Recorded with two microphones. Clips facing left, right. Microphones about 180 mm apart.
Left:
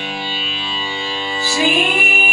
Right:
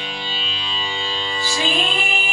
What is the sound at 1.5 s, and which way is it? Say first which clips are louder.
Music: left 6 dB; 70° left (ahead or behind).